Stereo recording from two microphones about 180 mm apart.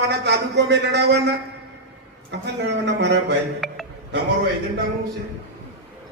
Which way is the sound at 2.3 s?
75° right (ahead or behind).